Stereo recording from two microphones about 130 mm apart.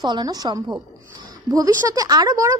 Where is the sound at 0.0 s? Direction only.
30° right (ahead or behind).